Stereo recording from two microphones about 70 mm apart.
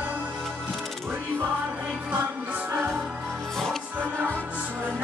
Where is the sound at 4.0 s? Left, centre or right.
Right.